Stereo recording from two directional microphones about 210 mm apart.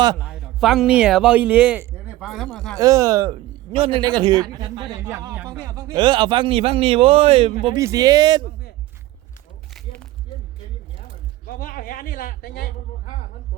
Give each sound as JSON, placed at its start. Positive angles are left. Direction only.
{"t": 0.3, "sound": "a man's voice", "side_deg": 0}
{"t": 2.7, "sound": "speech", "side_deg": -15}
{"t": 3.3, "sound": "a man's voice", "side_deg": -30}
{"t": 11.4, "sound": "speech", "side_deg": 45}